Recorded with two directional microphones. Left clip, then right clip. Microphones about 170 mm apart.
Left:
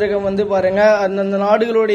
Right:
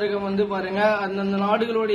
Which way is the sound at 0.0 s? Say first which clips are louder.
Left 7 dB; 40° left (ahead or behind).